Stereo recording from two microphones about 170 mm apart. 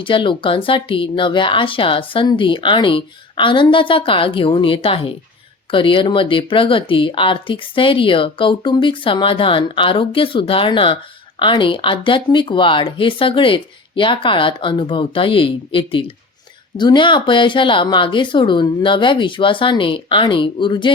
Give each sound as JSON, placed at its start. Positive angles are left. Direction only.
{"t": 0.0, "sound": "speech", "side_deg": 30}